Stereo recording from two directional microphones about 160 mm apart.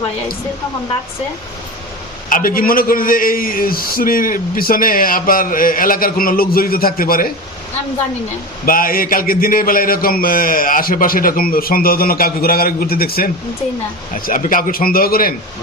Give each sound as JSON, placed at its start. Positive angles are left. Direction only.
{"t": 2.3, "sound": "a man's voice", "side_deg": 60}
{"t": 8.6, "sound": "a man's voice", "side_deg": 65}
{"t": 14.3, "sound": "a man's voice", "side_deg": 60}